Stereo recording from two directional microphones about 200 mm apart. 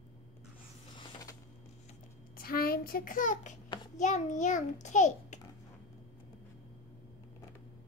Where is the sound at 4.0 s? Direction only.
35° left (ahead or behind).